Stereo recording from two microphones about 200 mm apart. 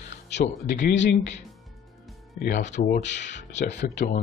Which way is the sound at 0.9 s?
60° left (ahead or behind).